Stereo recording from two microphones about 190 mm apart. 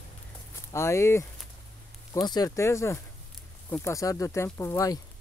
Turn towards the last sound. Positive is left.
turn(degrees=15)  # may be behind; listen again after turning